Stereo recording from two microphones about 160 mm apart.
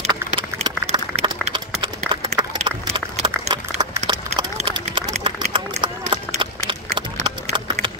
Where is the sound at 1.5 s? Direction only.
30° right (ahead or behind).